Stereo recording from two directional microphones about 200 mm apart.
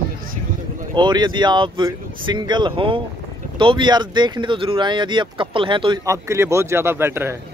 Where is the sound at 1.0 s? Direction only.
20° right (ahead or behind).